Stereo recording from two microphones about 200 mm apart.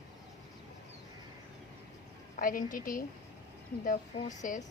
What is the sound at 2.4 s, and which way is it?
Speech, 45° left (ahead or behind).